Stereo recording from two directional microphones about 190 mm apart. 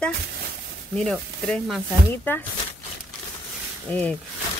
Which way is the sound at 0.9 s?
5° left (ahead or behind).